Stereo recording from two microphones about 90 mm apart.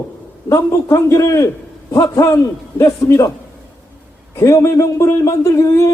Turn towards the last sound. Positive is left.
turn(degrees=35)  # may be behind; listen again after turning